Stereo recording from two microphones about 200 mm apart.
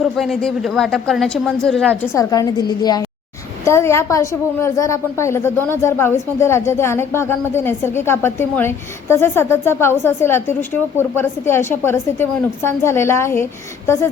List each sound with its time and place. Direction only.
0.0 s a woman's voice: centre (ahead or behind)
2.1 s a woman's voice: 15° left (ahead or behind)